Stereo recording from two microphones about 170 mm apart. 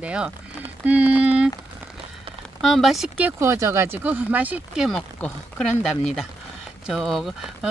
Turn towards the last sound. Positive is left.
turn(degrees=0)  # may be behind; listen again after turning